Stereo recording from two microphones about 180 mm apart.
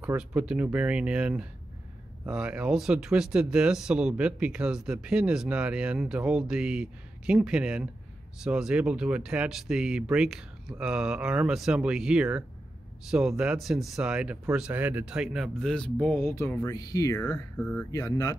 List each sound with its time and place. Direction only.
0.0 s speech: 5° right (ahead or behind); by 17.4 s 20° left (ahead or behind)
17.6 s speech: 5° left (ahead or behind)
17.9 s speech: 20° left (ahead or behind)